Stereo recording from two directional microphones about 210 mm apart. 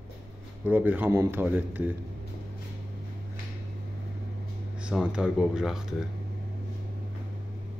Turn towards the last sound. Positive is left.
turn(degrees=0)  # may be behind; listen again after turning